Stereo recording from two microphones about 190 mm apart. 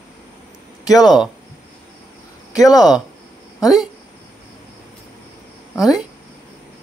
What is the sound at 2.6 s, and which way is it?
Speech, 20° left (ahead or behind).